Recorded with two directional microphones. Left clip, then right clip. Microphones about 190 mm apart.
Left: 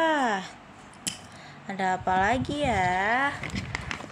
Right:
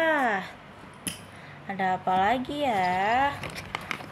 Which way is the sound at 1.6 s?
25° left (ahead or behind).